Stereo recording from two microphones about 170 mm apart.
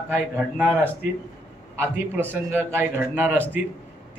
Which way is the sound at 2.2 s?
10° right (ahead or behind).